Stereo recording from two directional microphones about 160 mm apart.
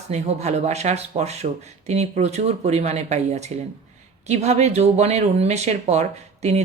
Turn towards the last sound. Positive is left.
turn(degrees=-45)  # may be behind; listen again after turning